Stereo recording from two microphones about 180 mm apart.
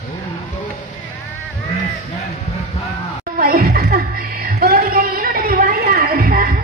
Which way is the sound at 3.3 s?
55° right (ahead or behind).